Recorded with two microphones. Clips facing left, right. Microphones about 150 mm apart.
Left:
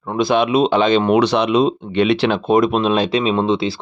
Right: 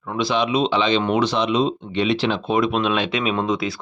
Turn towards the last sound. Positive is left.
turn(degrees=30)  # may be behind; listen again after turning